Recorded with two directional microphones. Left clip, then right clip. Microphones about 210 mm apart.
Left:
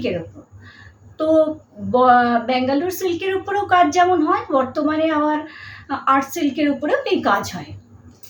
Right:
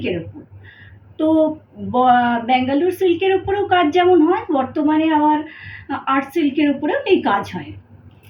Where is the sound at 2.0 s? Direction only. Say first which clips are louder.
Right 1 dB; 15° left (ahead or behind).